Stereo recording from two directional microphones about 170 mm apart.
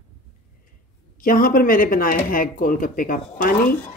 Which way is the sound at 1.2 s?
55° left (ahead or behind).